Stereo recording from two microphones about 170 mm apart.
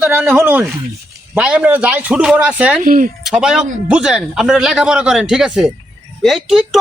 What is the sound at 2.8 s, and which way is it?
Speech, 55° right (ahead or behind).